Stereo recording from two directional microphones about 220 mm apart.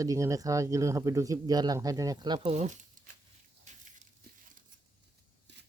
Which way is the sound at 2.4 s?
30° right (ahead or behind).